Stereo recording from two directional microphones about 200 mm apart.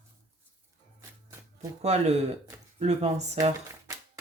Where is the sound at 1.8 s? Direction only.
35° right (ahead or behind).